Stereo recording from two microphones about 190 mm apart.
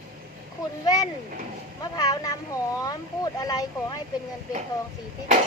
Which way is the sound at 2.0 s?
20° left (ahead or behind).